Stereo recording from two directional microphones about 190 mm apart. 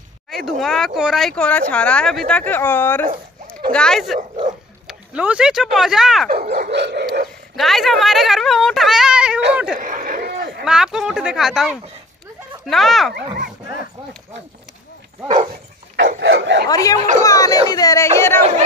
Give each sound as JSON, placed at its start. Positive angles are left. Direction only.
{"t": 0.5, "sound": "speech", "side_deg": 0}
{"t": 6.2, "sound": "dog", "side_deg": -55}
{"t": 7.5, "sound": "speech", "side_deg": 0}
{"t": 9.8, "sound": "a sound", "side_deg": -45}
{"t": 10.6, "sound": "speech", "side_deg": -5}
{"t": 16.2, "sound": "speech", "side_deg": -70}
{"t": 16.6, "sound": "speech", "side_deg": 20}